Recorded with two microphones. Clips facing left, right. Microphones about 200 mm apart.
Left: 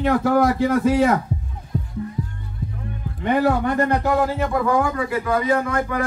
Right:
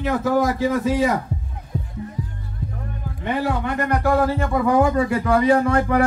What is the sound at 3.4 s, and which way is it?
Speech, 45° left (ahead or behind).